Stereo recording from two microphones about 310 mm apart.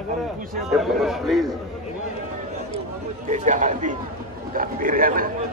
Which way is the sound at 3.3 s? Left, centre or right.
Right.